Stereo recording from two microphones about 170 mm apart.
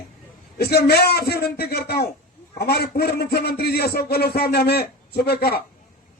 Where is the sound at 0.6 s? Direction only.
70° left (ahead or behind).